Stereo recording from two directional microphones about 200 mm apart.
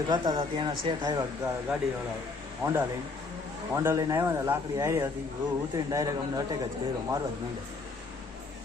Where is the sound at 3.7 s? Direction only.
15° right (ahead or behind).